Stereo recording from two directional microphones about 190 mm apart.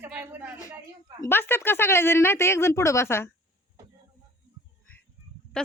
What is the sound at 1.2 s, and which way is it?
Speech, 10° left (ahead or behind).